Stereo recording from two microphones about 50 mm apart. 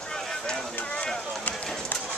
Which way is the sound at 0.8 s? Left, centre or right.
Left.